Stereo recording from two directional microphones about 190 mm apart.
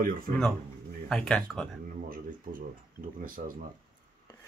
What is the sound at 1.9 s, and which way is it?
Speech, 45° right (ahead or behind).